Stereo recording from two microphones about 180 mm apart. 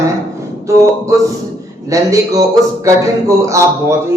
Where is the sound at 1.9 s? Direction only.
20° right (ahead or behind).